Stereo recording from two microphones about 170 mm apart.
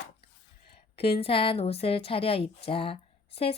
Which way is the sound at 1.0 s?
35° left (ahead or behind).